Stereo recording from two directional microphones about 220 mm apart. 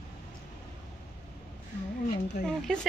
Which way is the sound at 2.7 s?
5° left (ahead or behind).